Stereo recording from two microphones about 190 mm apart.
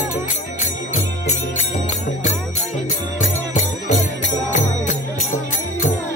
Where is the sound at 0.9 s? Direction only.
40° left (ahead or behind).